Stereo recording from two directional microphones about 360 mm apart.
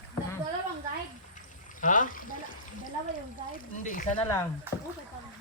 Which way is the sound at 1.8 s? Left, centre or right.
Left.